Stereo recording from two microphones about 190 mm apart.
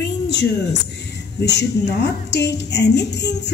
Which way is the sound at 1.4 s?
65° left (ahead or behind).